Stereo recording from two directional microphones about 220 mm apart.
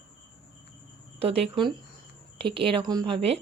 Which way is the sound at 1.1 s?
25° right (ahead or behind).